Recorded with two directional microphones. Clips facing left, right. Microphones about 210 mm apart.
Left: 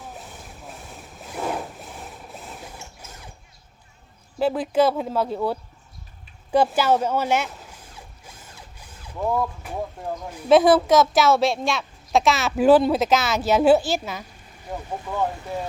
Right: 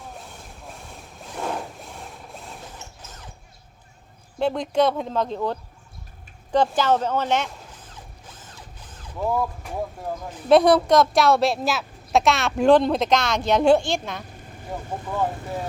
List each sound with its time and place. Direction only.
0.1 s vehicle: 5° left (ahead or behind)
4.4 s a woman's voice: 5° left (ahead or behind)
9.1 s a woman's voice: centre (ahead or behind)